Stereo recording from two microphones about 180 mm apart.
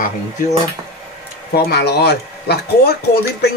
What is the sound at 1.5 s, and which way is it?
A man's voice, 65° left (ahead or behind).